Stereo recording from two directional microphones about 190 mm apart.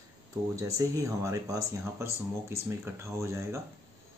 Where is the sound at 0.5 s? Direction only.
15° right (ahead or behind).